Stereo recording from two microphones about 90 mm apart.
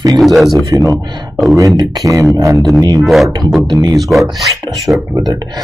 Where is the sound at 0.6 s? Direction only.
40° right (ahead or behind).